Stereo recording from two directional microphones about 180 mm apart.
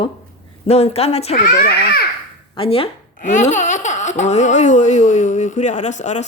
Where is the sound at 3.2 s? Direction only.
45° left (ahead or behind).